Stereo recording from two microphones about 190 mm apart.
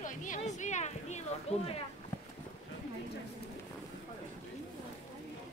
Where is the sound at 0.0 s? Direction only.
45° left (ahead or behind).